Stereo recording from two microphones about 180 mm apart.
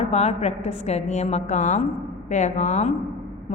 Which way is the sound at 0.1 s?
35° left (ahead or behind).